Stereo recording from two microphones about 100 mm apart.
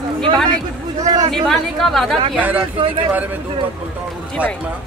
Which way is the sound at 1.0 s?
40° right (ahead or behind).